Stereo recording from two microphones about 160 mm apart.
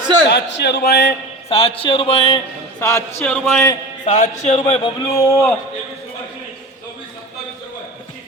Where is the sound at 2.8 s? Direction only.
15° left (ahead or behind).